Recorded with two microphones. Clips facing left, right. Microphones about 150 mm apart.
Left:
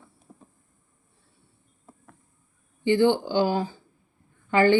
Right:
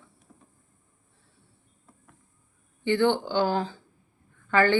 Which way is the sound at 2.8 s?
15° left (ahead or behind).